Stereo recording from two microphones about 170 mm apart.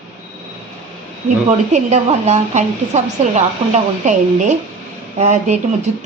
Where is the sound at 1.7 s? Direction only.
40° right (ahead or behind).